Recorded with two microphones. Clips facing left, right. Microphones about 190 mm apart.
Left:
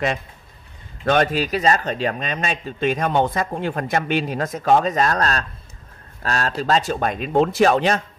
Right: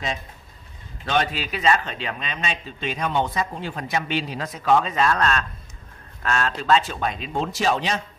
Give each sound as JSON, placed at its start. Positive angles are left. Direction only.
{"t": 1.0, "sound": "speech", "side_deg": 50}